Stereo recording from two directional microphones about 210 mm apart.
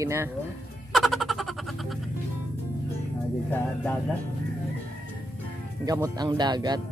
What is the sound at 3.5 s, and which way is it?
Speech, 10° left (ahead or behind).